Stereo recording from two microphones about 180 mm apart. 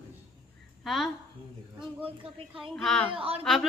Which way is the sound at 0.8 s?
Centre (ahead or behind).